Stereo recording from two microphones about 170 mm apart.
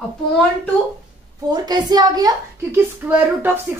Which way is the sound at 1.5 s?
25° right (ahead or behind).